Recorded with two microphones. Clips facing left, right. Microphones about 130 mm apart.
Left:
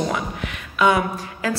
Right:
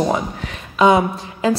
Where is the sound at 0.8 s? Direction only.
25° right (ahead or behind).